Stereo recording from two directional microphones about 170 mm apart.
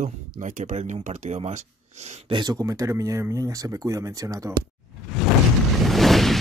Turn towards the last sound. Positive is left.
turn(degrees=0)  # may be behind; listen again after turning